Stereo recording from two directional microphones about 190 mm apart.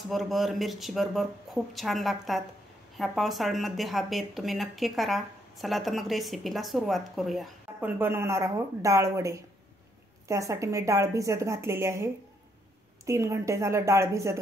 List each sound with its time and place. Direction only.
0.1 s speech: centre (ahead or behind)
8.0 s a woman's voice: 10° right (ahead or behind)